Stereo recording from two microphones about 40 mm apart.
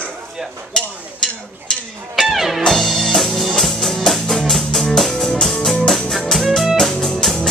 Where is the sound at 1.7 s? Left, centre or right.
Centre.